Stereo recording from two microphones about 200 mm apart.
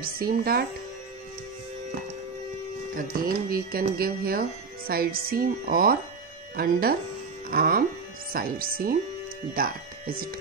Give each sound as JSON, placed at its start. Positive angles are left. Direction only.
{"t": 0.0, "sound": "speech", "side_deg": -50}
{"t": 2.9, "sound": "speech", "side_deg": -45}